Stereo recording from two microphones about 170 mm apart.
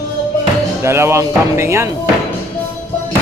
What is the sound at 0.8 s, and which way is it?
Speech, 15° right (ahead or behind).